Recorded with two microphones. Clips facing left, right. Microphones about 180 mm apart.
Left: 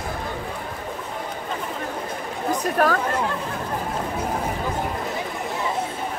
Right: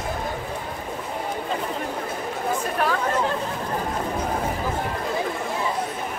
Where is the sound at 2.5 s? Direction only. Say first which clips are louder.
Left 4 dB; 45° left (ahead or behind).